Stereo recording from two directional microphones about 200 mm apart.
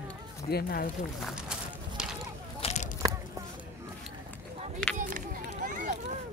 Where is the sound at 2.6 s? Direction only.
35° left (ahead or behind).